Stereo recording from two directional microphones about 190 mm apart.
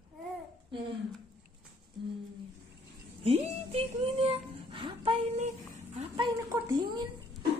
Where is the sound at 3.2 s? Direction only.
30° right (ahead or behind).